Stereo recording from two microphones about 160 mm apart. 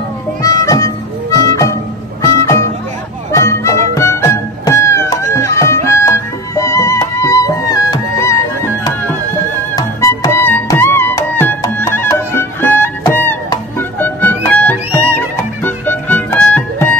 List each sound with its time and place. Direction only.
0.4 s music: 20° left (ahead or behind)